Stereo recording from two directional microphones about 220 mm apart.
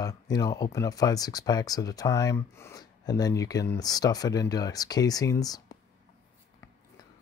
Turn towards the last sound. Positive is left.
turn(degrees=15)  # may be behind; listen again after turning